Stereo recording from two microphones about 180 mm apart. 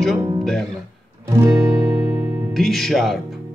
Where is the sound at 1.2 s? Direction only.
15° right (ahead or behind).